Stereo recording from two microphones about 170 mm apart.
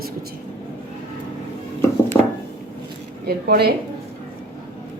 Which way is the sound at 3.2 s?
70° right (ahead or behind).